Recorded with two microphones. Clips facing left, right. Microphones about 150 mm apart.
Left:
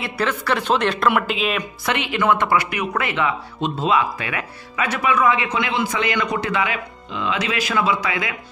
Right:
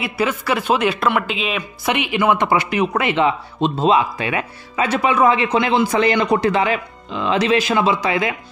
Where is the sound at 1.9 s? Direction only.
15° right (ahead or behind).